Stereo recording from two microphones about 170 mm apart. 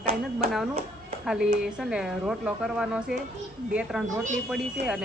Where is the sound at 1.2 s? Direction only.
5° right (ahead or behind).